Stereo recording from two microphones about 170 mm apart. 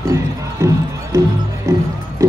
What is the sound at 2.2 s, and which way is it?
Music, 15° right (ahead or behind).